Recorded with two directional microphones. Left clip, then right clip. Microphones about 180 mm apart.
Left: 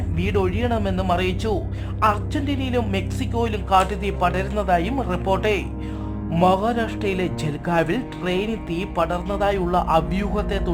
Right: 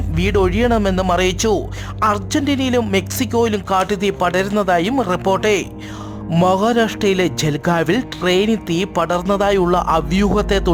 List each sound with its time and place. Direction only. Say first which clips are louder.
0.2 s speech: right 7 dB; 45° right (ahead or behind)